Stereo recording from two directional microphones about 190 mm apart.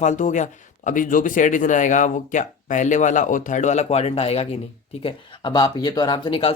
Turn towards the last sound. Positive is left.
turn(degrees=25)  # may be behind; listen again after turning